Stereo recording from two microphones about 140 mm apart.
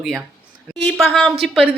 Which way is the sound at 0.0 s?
5° right (ahead or behind).